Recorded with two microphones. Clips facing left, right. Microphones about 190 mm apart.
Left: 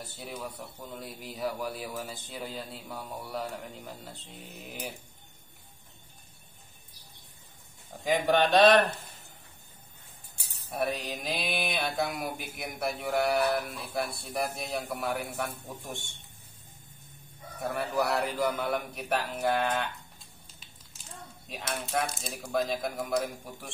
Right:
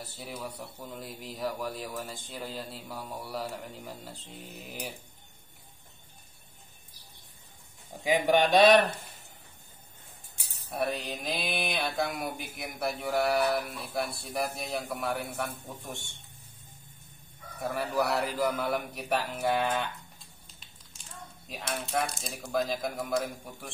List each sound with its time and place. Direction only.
0.0 s mantra: centre (ahead or behind)
8.0 s a man's voice: 10° right (ahead or behind)
10.7 s mantra: centre (ahead or behind)
17.6 s mantra: centre (ahead or behind)
21.5 s mantra: centre (ahead or behind)